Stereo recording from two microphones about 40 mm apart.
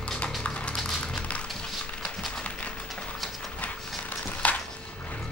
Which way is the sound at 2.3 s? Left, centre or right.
Left.